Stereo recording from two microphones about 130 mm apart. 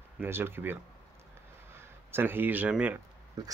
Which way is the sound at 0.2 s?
20° right (ahead or behind).